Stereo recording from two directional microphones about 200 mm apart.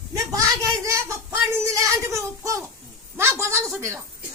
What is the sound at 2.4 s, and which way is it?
Babbling, 15° right (ahead or behind).